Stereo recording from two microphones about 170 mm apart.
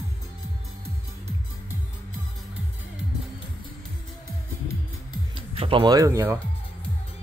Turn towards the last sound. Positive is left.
turn(degrees=-15)  # may be behind; listen again after turning